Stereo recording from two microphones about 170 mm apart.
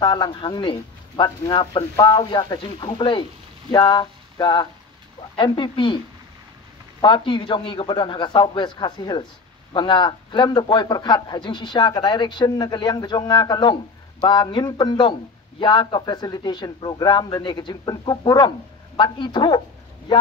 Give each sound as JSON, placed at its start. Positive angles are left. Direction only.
{"t": 0.0, "sound": "speech", "side_deg": 25}
{"t": 3.7, "sound": "a sound", "side_deg": 25}
{"t": 5.3, "sound": "speech", "side_deg": 30}
{"t": 7.0, "sound": "speech", "side_deg": 30}